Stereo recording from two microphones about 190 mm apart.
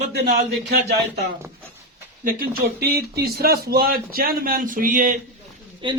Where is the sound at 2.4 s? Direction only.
50° right (ahead or behind).